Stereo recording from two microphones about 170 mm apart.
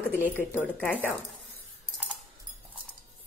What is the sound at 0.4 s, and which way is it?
Speech, 10° left (ahead or behind).